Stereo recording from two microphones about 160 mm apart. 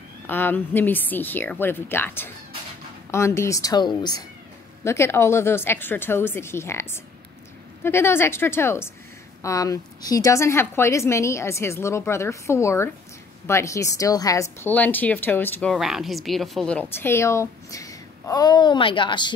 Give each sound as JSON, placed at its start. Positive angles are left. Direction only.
{"t": 0.3, "sound": "a woman's voice", "side_deg": 10}
{"t": 15.7, "sound": "a woman's voice", "side_deg": 0}